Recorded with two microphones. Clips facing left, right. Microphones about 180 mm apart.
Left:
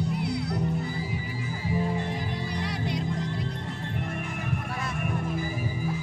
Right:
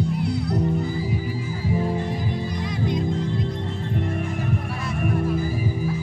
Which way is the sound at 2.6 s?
70° left (ahead or behind).